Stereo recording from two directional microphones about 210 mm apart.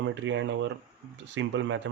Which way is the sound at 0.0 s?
60° right (ahead or behind).